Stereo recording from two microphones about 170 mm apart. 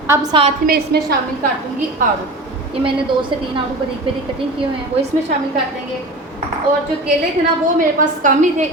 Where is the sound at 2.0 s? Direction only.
55° right (ahead or behind).